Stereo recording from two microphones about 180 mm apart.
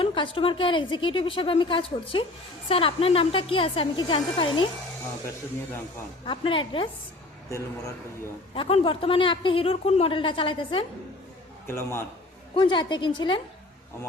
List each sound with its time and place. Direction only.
0.0 s speech: 30° left (ahead or behind)
6.2 s speech: 30° left (ahead or behind)
8.5 s speech: 30° left (ahead or behind)
11.6 s a man's voice: 15° left (ahead or behind)
12.5 s speech: 25° left (ahead or behind)